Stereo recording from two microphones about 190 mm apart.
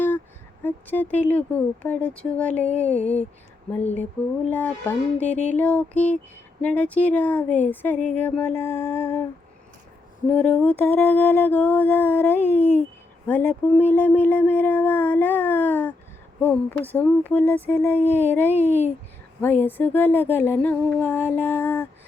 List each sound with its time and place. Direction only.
0.6 s speech: 10° left (ahead or behind)
2.8 s a sound: 35° left (ahead or behind)
3.9 s speech: 10° left (ahead or behind)
10.2 s speech: 5° left (ahead or behind)